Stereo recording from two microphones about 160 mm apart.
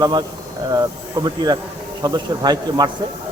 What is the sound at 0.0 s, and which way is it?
Speech, 25° right (ahead or behind).